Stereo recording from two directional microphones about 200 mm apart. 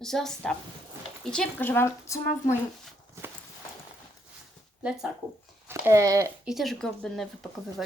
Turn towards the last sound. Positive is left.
turn(degrees=0)  # may be behind; listen again after turning